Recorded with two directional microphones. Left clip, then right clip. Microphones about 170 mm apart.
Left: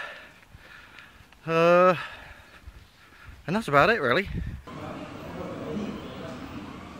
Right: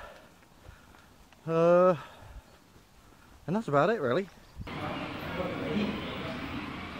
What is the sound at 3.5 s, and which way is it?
Speech, 15° left (ahead or behind).